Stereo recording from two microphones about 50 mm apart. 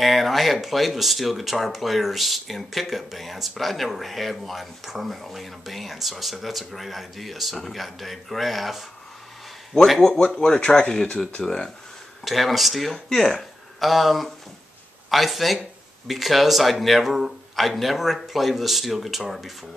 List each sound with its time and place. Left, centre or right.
0.0 s speech: centre
9.8 s speech: centre
12.3 s speech: centre